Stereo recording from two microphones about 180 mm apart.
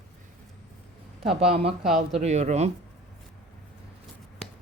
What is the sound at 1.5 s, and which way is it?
Speech, 35° right (ahead or behind).